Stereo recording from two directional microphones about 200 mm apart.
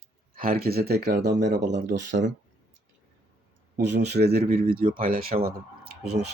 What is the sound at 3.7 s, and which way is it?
Speech, 60° right (ahead or behind).